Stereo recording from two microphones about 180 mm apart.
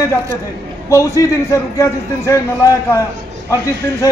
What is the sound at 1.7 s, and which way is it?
Speech, 15° left (ahead or behind).